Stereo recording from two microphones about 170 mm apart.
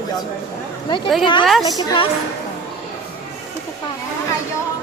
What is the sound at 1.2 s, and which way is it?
Speech, 30° left (ahead or behind).